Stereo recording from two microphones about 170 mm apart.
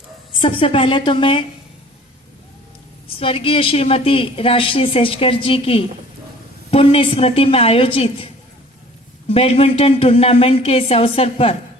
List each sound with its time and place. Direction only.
0.3 s a woman's voice: 30° left (ahead or behind)
3.2 s a woman's voice: 35° left (ahead or behind)